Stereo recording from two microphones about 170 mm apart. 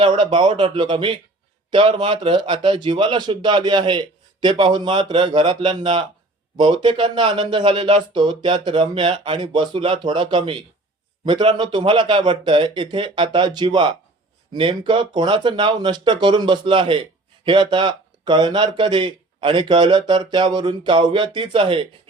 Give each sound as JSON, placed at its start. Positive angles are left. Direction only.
{"t": 0.0, "sound": "a man's voice", "side_deg": -30}